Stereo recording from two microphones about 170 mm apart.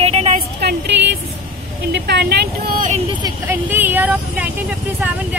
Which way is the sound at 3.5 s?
10° right (ahead or behind).